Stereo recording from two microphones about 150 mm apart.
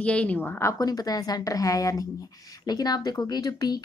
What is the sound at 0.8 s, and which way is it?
Speech, 25° left (ahead or behind).